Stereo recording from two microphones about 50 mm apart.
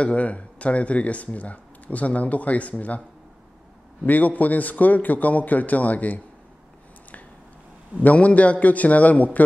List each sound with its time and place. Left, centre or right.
0.0 s speech: left
4.0 s a man's voice: left
8.0 s a man's voice: left